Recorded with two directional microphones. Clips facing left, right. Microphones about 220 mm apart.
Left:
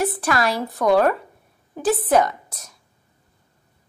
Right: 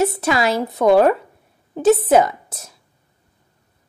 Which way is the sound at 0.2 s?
25° right (ahead or behind).